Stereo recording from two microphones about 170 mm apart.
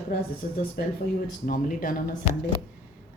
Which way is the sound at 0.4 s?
60° left (ahead or behind).